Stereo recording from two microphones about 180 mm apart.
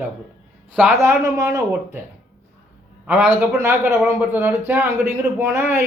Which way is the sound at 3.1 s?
10° right (ahead or behind).